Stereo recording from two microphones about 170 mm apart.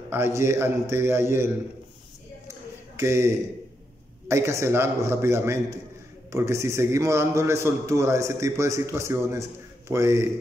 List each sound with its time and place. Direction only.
0.1 s a man's voice: 15° right (ahead or behind)
3.0 s a man's voice: 15° right (ahead or behind)